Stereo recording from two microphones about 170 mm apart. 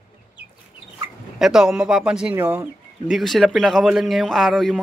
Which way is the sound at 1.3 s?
Centre (ahead or behind).